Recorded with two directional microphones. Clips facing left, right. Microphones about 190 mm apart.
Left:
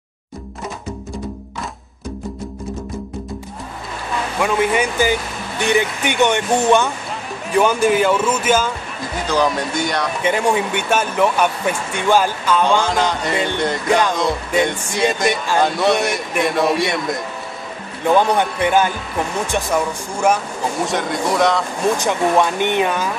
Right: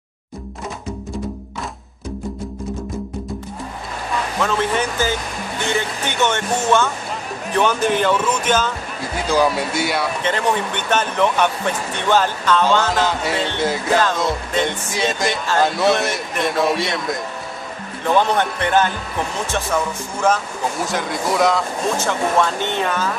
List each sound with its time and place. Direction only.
4.4 s speech: 10° left (ahead or behind)
9.3 s speech: 10° right (ahead or behind)
10.2 s speech: 10° left (ahead or behind)
12.8 s speech: 5° right (ahead or behind); by 20.3 s 15° left (ahead or behind)
20.8 s speech: centre (ahead or behind)
21.9 s speech: 15° left (ahead or behind)